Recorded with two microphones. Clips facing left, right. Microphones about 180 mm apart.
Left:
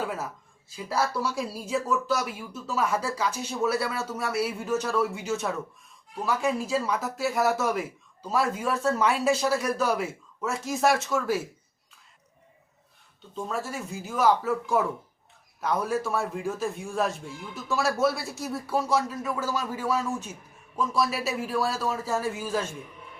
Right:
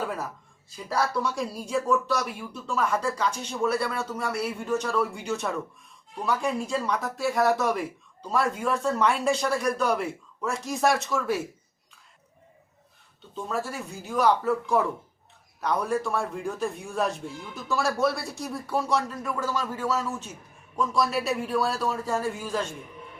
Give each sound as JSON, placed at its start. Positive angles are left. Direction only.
{"t": 0.9, "sound": "speech", "side_deg": 5}
{"t": 13.3, "sound": "speech", "side_deg": 0}